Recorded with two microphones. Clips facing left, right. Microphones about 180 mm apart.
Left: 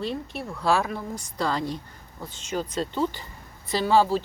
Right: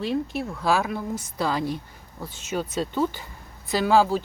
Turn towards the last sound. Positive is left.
turn(degrees=0)  # may be behind; listen again after turning